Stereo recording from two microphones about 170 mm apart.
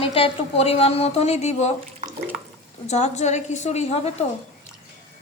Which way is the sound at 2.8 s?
40° left (ahead or behind).